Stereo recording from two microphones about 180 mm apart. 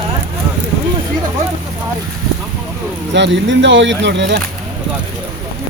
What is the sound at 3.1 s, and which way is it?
Speech, 80° right.